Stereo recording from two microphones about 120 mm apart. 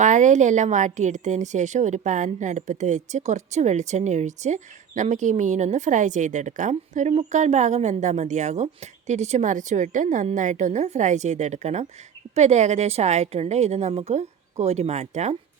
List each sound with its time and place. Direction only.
0.0 s a woman's voice: 90° right; by 15.4 s 70° right (ahead or behind)